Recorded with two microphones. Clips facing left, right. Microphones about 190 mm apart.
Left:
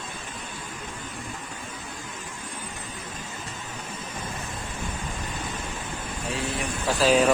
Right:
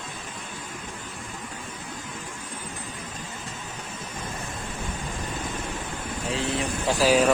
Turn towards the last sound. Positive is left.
turn(degrees=-5)  # may be behind; listen again after turning